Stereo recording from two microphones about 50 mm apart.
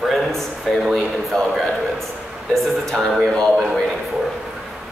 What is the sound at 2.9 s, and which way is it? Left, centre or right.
Speech, centre.